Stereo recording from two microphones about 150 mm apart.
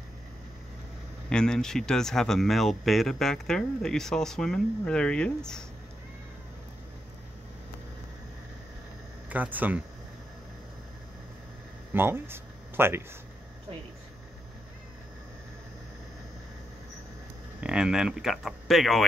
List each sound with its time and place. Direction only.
1.3 s speech: 5° left (ahead or behind)
9.3 s speech: 10° right (ahead or behind)
11.9 s speech: 15° right (ahead or behind)
17.6 s speech: 5° right (ahead or behind)